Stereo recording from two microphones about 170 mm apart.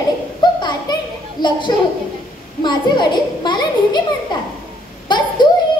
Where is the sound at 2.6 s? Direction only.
25° left (ahead or behind).